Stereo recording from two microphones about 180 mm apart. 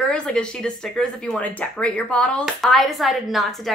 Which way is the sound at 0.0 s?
5° left (ahead or behind).